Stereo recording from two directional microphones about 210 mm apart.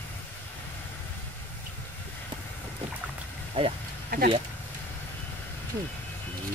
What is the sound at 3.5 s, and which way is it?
Speech, 25° right (ahead or behind).